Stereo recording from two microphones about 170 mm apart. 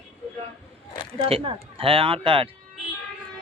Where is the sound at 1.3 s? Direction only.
35° right (ahead or behind).